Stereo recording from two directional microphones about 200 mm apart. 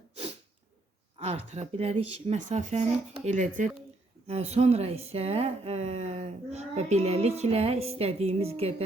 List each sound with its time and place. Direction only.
1.1 s speech: 30° right (ahead or behind)